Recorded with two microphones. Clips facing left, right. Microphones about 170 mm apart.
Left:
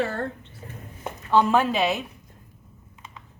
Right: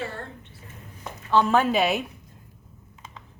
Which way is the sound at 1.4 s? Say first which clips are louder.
Even; centre (ahead or behind).